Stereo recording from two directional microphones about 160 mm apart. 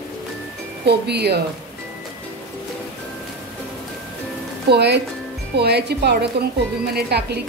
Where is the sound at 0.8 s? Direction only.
90° right.